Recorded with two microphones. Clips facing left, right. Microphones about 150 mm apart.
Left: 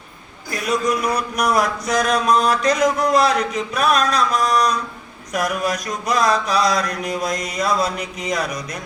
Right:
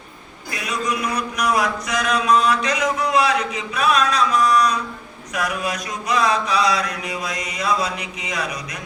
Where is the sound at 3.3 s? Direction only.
10° right (ahead or behind).